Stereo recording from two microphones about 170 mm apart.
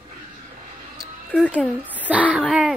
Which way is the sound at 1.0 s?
5° left (ahead or behind).